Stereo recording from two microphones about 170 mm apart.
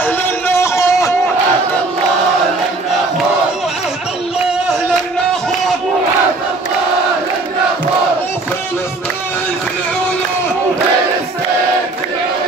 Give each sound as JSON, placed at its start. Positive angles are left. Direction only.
{"t": 0.0, "sound": "music", "side_deg": 15}